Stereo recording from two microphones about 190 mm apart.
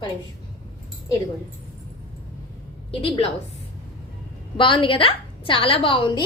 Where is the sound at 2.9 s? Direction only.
30° left (ahead or behind).